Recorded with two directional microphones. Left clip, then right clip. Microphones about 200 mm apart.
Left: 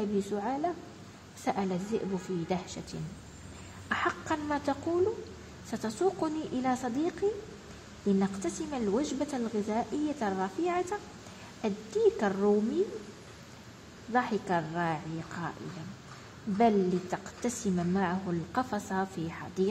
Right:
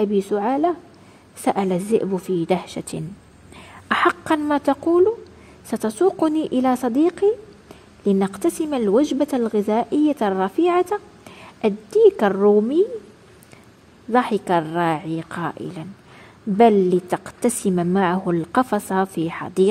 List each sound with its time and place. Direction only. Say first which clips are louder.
0.0 s a woman's voice: right 12 dB; 45° right (ahead or behind)
14.1 s a woman's voice: right 11 dB; 45° right (ahead or behind)
16.5 s a woman's voice: right 12 dB; 45° right (ahead or behind)